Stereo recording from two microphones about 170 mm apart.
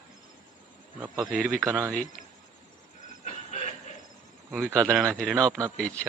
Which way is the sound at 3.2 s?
40° left (ahead or behind).